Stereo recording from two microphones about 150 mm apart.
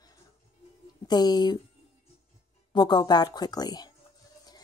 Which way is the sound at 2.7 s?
30° left (ahead or behind).